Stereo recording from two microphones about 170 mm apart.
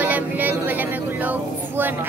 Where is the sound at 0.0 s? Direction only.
10° right (ahead or behind).